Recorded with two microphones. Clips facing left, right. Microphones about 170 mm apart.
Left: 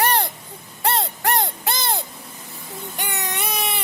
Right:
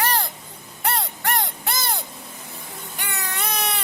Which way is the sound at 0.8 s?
25° left (ahead or behind).